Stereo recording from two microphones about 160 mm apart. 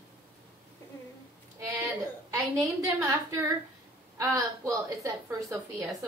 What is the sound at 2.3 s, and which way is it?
A woman's voice, 20° right (ahead or behind).